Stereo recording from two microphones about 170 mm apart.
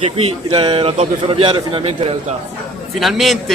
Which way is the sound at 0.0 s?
30° right (ahead or behind).